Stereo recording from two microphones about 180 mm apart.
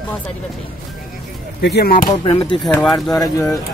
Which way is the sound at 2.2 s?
30° left (ahead or behind).